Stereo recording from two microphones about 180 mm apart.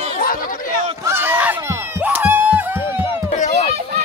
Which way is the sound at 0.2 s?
50° left (ahead or behind).